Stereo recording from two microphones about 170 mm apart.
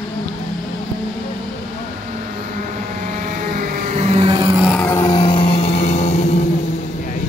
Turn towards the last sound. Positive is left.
turn(degrees=40)  # may be behind; listen again after turning